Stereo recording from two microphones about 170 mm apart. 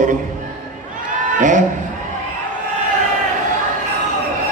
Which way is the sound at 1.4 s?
50° right (ahead or behind).